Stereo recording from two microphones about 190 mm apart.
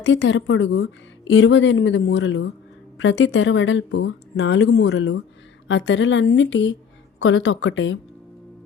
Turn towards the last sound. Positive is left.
turn(degrees=80)